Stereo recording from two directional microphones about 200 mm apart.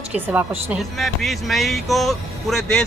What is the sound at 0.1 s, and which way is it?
A woman's voice, 10° right (ahead or behind).